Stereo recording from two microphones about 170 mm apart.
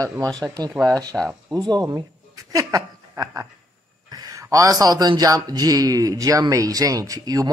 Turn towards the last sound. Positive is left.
turn(degrees=-20)  # may be behind; listen again after turning